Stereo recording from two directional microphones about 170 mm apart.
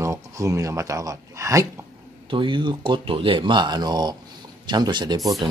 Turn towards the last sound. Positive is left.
turn(degrees=-25)  # may be behind; listen again after turning